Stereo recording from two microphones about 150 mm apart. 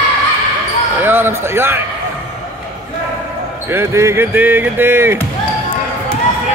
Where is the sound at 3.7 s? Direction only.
15° right (ahead or behind).